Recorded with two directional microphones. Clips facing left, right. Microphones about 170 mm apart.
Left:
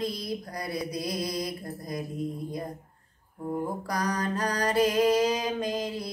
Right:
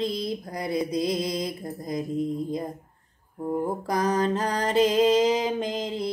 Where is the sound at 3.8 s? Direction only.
25° right (ahead or behind).